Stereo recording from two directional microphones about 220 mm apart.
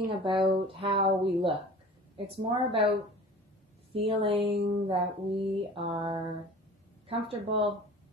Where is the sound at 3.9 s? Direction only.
25° right (ahead or behind).